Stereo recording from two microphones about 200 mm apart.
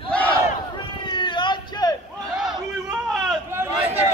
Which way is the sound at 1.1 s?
25° left (ahead or behind).